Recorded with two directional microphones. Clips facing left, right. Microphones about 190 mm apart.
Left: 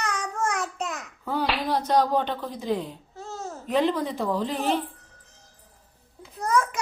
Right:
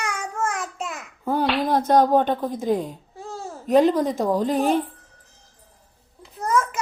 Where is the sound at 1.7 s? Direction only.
50° right (ahead or behind).